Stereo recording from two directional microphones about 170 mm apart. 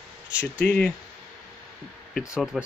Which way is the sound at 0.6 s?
10° left (ahead or behind).